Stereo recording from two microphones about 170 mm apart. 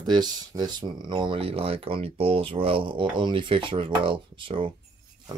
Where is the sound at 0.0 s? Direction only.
25° right (ahead or behind).